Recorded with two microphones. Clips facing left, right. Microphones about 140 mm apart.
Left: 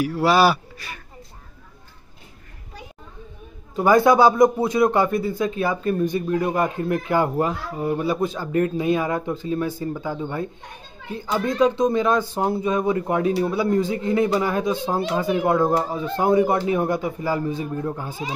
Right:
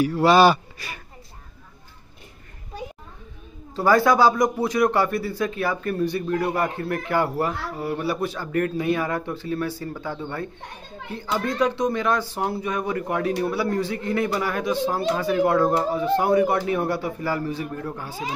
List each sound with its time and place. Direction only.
0.0 s speech: 5° left (ahead or behind)
3.7 s speech: 20° left (ahead or behind)